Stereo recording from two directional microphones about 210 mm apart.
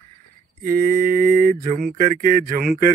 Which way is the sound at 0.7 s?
40° right (ahead or behind).